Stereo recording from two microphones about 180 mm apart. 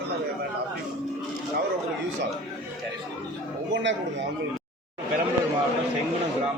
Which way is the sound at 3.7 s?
90° right.